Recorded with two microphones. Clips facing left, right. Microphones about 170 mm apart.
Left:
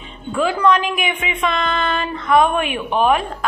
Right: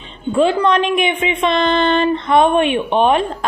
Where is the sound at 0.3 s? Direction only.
25° right (ahead or behind).